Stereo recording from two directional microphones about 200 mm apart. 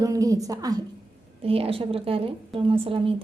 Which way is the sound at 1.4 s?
30° right (ahead or behind).